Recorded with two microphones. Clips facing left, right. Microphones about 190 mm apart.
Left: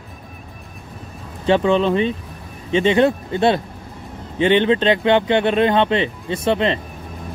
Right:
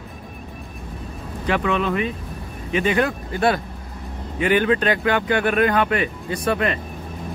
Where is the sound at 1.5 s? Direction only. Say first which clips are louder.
Left 6 dB; 30° left (ahead or behind).